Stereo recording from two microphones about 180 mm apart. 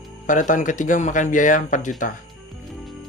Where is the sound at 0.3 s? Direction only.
45° left (ahead or behind).